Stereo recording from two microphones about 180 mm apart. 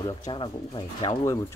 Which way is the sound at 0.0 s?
25° left (ahead or behind).